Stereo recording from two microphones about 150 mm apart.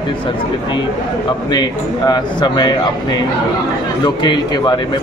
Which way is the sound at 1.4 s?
25° left (ahead or behind).